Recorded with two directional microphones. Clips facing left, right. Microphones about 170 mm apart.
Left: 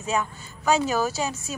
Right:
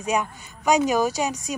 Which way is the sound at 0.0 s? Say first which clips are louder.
Right 2 dB; 15° right (ahead or behind).